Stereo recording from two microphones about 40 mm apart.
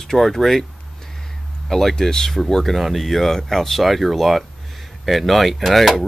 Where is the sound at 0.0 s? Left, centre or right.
Centre.